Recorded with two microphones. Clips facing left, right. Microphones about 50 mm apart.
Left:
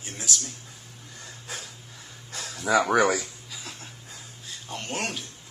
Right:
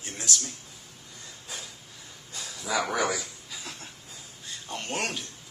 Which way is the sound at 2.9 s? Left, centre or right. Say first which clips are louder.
Left 6 dB; left.